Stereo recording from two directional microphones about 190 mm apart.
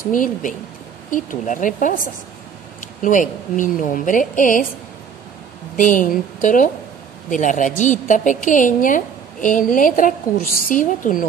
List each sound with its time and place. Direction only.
0.0 s a woman's voice: 45° left (ahead or behind)
5.8 s a woman's voice: 45° left (ahead or behind)